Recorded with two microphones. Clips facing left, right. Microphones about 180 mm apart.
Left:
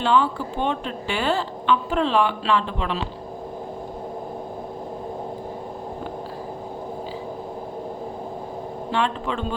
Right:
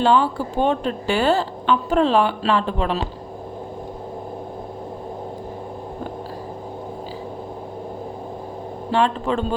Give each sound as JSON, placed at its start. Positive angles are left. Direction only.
{"t": 0.0, "sound": "a woman's voice", "side_deg": -40}
{"t": 8.9, "sound": "a woman's voice", "side_deg": -40}